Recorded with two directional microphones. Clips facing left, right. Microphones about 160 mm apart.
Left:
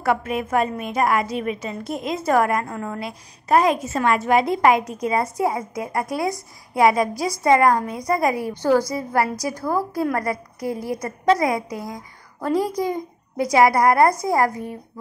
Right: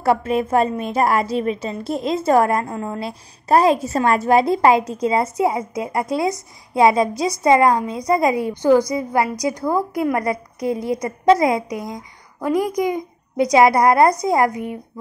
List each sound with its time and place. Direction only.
0.0 s a woman's voice: 30° right (ahead or behind)